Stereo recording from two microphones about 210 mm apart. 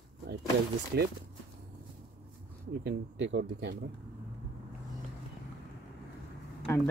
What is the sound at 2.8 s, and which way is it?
Speech, 55° right (ahead or behind).